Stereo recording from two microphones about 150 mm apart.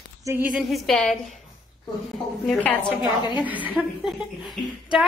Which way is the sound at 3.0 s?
30° left (ahead or behind).